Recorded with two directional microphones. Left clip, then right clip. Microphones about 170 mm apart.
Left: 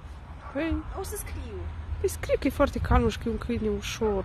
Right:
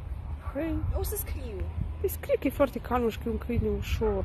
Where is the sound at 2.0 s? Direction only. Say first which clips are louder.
Left 1 dB; 25° left (ahead or behind).